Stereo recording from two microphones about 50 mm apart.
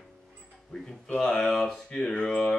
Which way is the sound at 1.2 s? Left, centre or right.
Centre.